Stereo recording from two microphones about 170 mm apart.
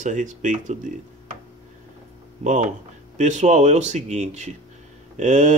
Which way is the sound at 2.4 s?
45° right (ahead or behind).